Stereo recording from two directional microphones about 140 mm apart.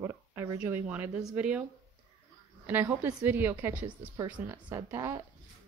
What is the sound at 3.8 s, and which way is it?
A woman's voice, 35° right (ahead or behind).